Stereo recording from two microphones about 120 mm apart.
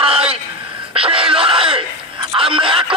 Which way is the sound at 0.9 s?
50° right (ahead or behind).